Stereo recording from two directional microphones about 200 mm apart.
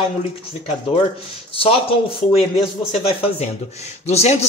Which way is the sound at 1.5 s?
30° left (ahead or behind).